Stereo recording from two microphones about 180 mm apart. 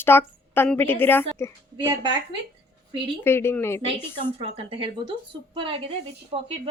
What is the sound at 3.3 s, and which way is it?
Speech, 15° left (ahead or behind).